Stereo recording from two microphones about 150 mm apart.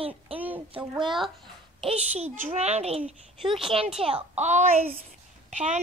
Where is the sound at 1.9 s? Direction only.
45° right (ahead or behind).